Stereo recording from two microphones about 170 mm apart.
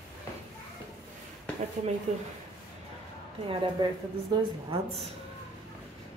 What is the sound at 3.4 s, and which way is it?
Speech, 30° right (ahead or behind).